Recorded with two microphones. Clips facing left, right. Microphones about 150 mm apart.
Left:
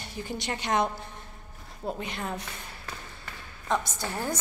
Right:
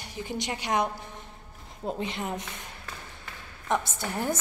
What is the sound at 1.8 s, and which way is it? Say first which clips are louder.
Speech: right 2 dB; 20° right (ahead or behind).